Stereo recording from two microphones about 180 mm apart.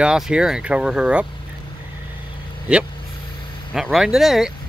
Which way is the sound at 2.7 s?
5° right (ahead or behind).